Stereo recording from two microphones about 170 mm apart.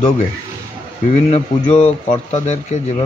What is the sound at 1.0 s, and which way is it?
A man's voice, 40° left (ahead or behind).